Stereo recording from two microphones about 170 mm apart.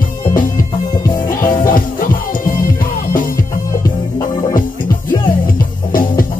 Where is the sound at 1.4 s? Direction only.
55° left (ahead or behind).